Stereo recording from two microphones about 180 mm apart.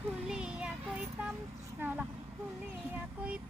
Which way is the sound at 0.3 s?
5° right (ahead or behind).